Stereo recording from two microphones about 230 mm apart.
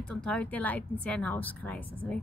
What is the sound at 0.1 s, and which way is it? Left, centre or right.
A woman's voice, centre.